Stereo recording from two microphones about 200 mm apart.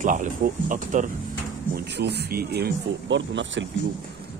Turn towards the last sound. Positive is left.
turn(degrees=-65)  # may be behind; listen again after turning